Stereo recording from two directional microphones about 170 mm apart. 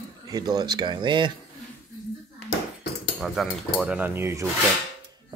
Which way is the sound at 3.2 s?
Centre (ahead or behind).